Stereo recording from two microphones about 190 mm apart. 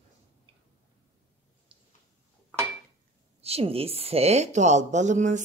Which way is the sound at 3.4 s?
30° right (ahead or behind).